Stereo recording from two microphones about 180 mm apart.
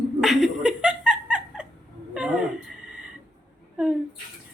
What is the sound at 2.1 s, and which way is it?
Dog, 5° right (ahead or behind).